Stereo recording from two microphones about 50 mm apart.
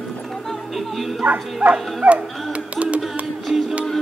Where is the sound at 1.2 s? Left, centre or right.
Right.